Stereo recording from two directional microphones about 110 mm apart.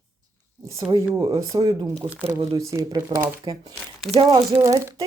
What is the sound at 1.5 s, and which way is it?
Speech, 40° right (ahead or behind).